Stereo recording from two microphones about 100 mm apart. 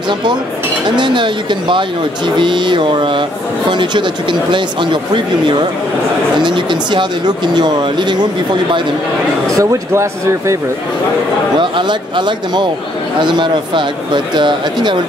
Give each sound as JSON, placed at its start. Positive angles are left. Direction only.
{"t": 0.8, "sound": "speech", "side_deg": -50}
{"t": 6.4, "sound": "speech", "side_deg": -50}
{"t": 9.5, "sound": "speech", "side_deg": -35}
{"t": 11.5, "sound": "speech", "side_deg": -50}